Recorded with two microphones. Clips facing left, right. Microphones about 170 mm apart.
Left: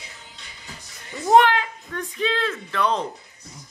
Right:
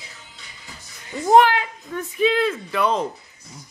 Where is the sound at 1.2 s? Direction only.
5° right (ahead or behind).